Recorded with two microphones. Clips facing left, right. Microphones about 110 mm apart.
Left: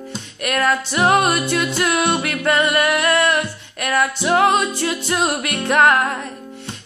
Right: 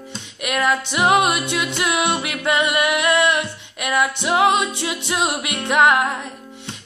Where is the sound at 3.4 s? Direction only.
10° right (ahead or behind).